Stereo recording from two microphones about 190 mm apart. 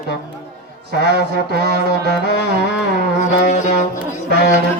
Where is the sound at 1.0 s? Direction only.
60° right (ahead or behind).